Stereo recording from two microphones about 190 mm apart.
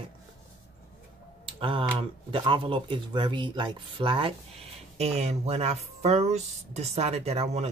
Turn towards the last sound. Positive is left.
turn(degrees=-35)  # may be behind; listen again after turning